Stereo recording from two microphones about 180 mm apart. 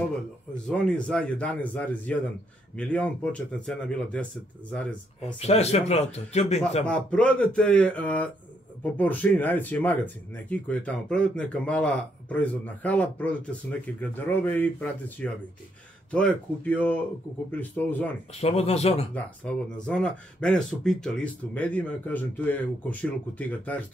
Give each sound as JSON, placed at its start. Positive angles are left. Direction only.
{"t": 0.7, "sound": "speech", "side_deg": 5}
{"t": 5.4, "sound": "speech", "side_deg": 35}
{"t": 6.9, "sound": "speech", "side_deg": 5}
{"t": 18.4, "sound": "speech", "side_deg": 35}
{"t": 19.1, "sound": "speech", "side_deg": 5}